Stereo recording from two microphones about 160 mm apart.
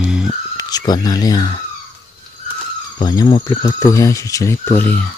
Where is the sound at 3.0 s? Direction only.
25° left (ahead or behind); by 5.0 s 10° left (ahead or behind).